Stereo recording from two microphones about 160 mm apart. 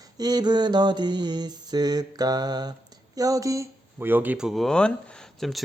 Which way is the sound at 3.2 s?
20° right (ahead or behind).